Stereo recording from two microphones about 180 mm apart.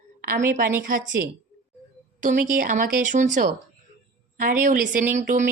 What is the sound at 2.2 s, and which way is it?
Speech, 45° right (ahead or behind).